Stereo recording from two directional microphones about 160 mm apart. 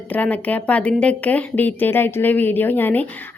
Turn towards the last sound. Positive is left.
turn(degrees=10)  # may be behind; listen again after turning